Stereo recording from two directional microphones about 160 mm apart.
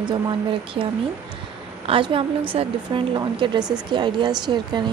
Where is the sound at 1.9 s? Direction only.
30° right (ahead or behind).